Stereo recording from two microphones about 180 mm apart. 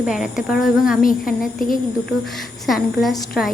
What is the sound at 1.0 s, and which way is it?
Speech, 50° left (ahead or behind).